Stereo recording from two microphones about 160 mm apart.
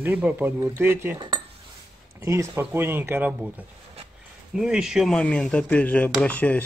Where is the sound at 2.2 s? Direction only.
20° right (ahead or behind).